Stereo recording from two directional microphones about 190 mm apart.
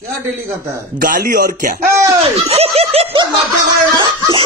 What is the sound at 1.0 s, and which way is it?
Speech, 45° right (ahead or behind).